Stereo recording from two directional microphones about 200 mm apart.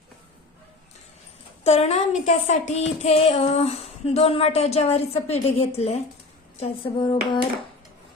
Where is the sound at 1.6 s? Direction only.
30° left (ahead or behind).